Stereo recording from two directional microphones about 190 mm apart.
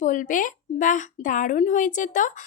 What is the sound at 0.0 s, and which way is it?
Speech, 45° left (ahead or behind).